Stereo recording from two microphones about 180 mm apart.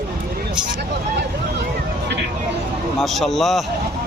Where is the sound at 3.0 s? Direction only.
Centre (ahead or behind).